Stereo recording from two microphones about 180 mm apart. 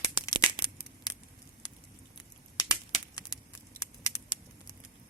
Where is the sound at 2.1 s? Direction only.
20° left (ahead or behind).